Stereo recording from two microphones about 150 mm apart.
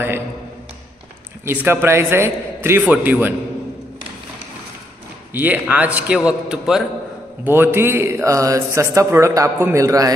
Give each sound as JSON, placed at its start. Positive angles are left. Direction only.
{"t": 1.4, "sound": "a man's voice", "side_deg": -15}
{"t": 5.3, "sound": "a man's voice", "side_deg": -10}
{"t": 7.4, "sound": "speech", "side_deg": -15}